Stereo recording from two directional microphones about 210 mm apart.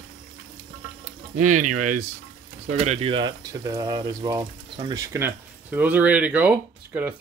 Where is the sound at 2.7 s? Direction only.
30° right (ahead or behind).